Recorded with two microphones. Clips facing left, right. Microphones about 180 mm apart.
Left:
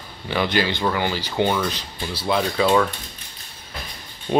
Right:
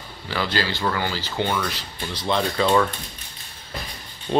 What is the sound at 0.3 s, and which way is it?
Speech, 20° left (ahead or behind).